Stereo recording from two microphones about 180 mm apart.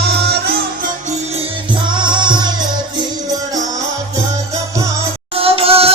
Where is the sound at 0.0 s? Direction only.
65° right (ahead or behind).